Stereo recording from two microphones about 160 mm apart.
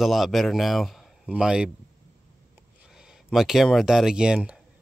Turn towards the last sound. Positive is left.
turn(degrees=-5)  # may be behind; listen again after turning